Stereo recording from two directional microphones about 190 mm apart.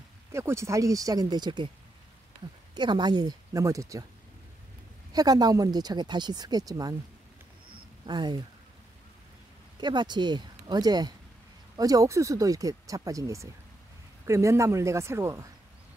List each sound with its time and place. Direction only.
0.3 s speech: 15° right (ahead or behind)
2.7 s speech: 25° right (ahead or behind)
5.1 s speech: 20° right (ahead or behind)
8.1 s speech: 25° right (ahead or behind)
9.8 s speech: 25° right (ahead or behind)